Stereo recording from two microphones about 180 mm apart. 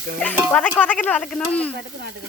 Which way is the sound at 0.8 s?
10° left (ahead or behind).